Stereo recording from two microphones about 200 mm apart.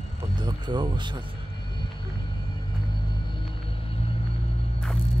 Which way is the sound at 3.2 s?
25° left (ahead or behind).